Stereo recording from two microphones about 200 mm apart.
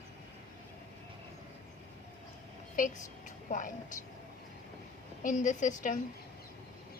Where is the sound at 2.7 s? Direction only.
40° left (ahead or behind).